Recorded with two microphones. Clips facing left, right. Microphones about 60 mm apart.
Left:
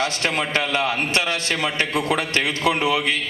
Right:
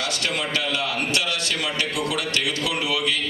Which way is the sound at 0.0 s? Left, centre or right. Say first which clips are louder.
Left 4 dB; left.